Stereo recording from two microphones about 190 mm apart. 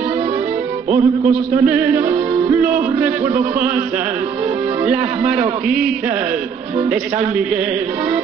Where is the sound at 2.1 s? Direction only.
30° right (ahead or behind).